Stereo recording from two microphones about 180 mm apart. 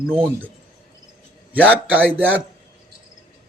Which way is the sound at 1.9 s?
10° right (ahead or behind).